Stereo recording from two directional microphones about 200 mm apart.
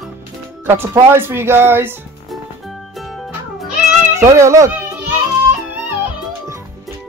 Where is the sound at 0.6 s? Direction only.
10° right (ahead or behind).